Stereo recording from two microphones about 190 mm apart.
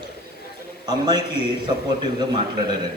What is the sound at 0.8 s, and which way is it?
Speech, 20° right (ahead or behind).